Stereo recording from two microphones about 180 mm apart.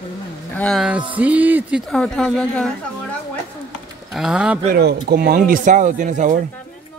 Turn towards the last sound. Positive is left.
turn(degrees=-45)  # may be behind; listen again after turning